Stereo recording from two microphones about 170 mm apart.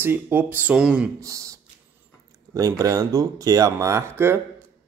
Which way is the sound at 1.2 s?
20° right (ahead or behind).